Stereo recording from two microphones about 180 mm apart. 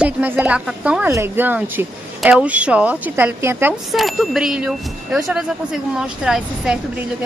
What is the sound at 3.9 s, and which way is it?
A woman's voice, centre (ahead or behind).